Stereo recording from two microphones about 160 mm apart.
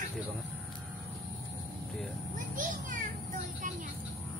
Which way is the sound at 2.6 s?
55° right (ahead or behind).